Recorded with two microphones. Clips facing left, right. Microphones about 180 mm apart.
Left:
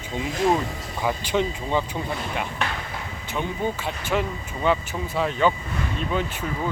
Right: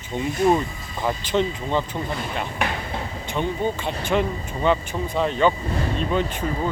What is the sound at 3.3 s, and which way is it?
Speech, 5° left (ahead or behind).